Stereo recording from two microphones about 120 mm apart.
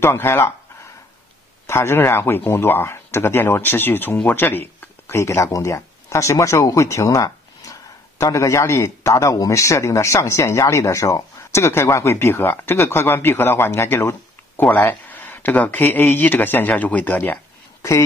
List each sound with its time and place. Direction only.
0.0 s speech: 20° left (ahead or behind)
1.7 s speech: 20° left (ahead or behind)